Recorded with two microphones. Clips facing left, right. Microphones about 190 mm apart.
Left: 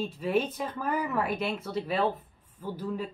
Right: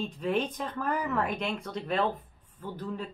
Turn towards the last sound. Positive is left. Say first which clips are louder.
# left 3 dB
turn(degrees=10)  # may be behind; listen again after turning